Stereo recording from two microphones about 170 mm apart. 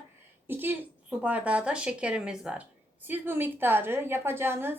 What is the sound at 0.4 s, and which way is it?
Speech, 10° right (ahead or behind).